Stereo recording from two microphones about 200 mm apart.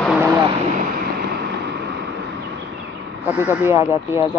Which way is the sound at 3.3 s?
10° right (ahead or behind).